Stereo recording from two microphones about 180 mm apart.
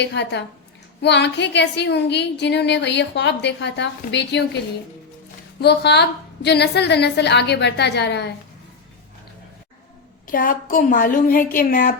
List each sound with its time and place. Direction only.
0.0 s a woman's voice: 70° left (ahead or behind)
5.5 s a woman's voice: 65° left (ahead or behind)
10.2 s a woman's voice: 50° left (ahead or behind)